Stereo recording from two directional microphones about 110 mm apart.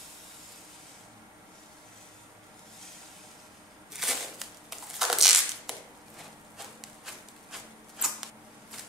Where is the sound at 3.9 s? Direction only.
Centre (ahead or behind).